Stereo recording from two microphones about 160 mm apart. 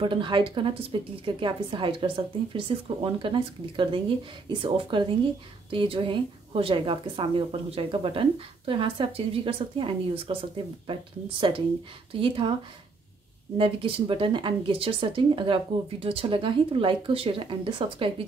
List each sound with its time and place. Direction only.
0.0 s a woman's voice: 30° right (ahead or behind)
13.6 s a woman's voice: 35° right (ahead or behind)